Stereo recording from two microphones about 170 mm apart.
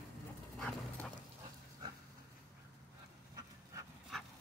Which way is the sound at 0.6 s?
5° left (ahead or behind).